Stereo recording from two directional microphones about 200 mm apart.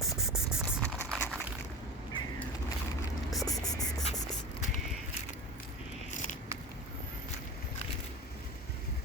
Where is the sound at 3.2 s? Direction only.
Centre (ahead or behind).